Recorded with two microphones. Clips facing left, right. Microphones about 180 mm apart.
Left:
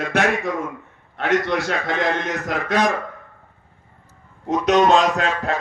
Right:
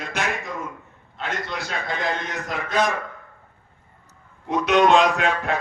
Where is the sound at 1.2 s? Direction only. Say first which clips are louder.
Left 10 dB; 75° left (ahead or behind).